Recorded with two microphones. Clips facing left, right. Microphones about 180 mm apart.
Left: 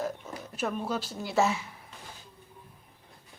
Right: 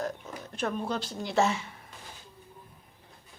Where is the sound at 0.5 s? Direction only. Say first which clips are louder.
Even; 5° left (ahead or behind).